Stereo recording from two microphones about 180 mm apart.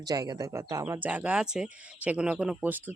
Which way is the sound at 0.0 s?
20° right (ahead or behind).